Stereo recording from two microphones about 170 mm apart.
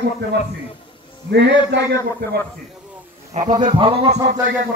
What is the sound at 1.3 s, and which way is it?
Speech, 90° right.